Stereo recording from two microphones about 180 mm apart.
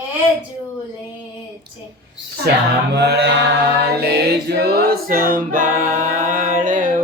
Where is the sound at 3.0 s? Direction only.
65° right (ahead or behind); by 7.0 s 45° right (ahead or behind).